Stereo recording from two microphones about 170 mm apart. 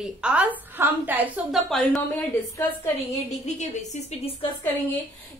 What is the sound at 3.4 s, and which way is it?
Speech, 45° left (ahead or behind).